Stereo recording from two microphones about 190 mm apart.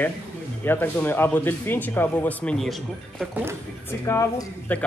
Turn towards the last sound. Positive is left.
turn(degrees=10)  # may be behind; listen again after turning